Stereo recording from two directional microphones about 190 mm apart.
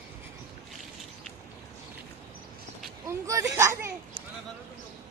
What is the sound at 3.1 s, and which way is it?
Speech, 15° right (ahead or behind).